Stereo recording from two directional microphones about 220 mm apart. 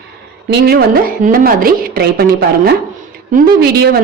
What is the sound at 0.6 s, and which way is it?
A woman's voice, 45° right (ahead or behind).